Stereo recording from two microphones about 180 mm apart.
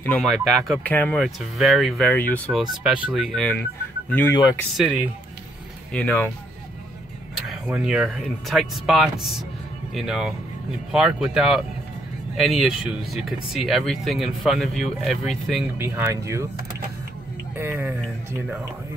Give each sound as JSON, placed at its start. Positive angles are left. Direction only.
{"t": 0.0, "sound": "speech", "side_deg": 5}
{"t": 3.1, "sound": "speech", "side_deg": -5}
{"t": 4.1, "sound": "speech", "side_deg": 10}
{"t": 4.7, "sound": "speech", "side_deg": -5}
{"t": 5.9, "sound": "speech", "side_deg": 10}
{"t": 7.4, "sound": "speech", "side_deg": -5}
{"t": 15.8, "sound": "speech", "side_deg": -15}
{"t": 17.6, "sound": "speech", "side_deg": -10}